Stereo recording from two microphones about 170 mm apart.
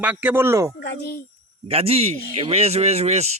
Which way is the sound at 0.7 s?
85° left.